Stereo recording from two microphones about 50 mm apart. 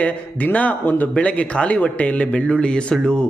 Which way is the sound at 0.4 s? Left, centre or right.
Left.